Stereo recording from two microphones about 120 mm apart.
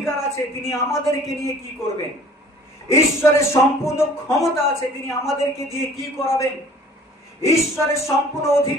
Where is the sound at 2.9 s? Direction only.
25° left (ahead or behind).